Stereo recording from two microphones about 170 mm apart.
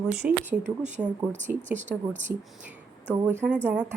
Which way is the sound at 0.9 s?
45° right (ahead or behind).